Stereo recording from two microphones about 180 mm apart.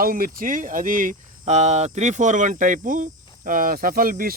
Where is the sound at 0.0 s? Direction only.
50° right (ahead or behind).